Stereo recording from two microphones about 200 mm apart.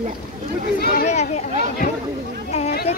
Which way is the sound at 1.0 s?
35° left (ahead or behind).